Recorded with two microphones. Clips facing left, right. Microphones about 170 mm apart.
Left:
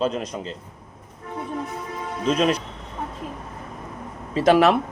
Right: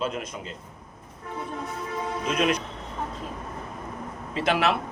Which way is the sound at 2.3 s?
35° left (ahead or behind).